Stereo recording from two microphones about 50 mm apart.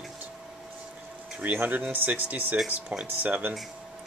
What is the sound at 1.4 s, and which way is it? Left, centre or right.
Speech, right.